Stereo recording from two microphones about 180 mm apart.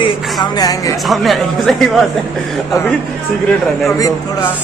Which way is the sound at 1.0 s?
Centre (ahead or behind).